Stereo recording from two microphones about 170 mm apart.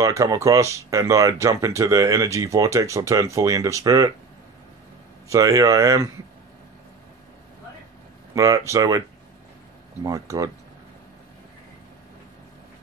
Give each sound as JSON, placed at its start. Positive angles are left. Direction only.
{"t": 0.0, "sound": "speech", "side_deg": -20}
{"t": 5.3, "sound": "speech", "side_deg": -20}
{"t": 8.4, "sound": "speech", "side_deg": -20}
{"t": 10.0, "sound": "speech", "side_deg": -20}